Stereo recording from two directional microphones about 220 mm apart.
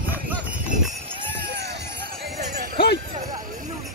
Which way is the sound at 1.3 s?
50° right (ahead or behind).